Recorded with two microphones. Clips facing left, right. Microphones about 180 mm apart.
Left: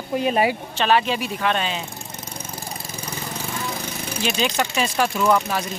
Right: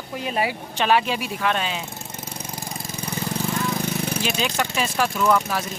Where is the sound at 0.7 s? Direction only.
10° right (ahead or behind).